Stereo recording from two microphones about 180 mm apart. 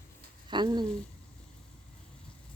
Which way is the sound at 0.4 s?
25° right (ahead or behind).